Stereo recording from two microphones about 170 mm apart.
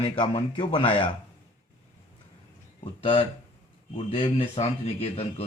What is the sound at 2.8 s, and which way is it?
Speech, 35° left (ahead or behind).